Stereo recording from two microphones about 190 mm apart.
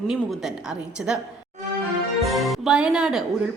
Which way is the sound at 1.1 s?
5° right (ahead or behind).